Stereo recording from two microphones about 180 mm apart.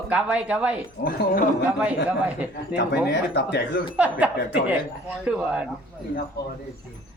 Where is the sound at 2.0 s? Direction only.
5° right (ahead or behind).